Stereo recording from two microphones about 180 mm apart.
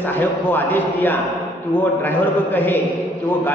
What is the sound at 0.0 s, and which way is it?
A man's voice, 10° left (ahead or behind).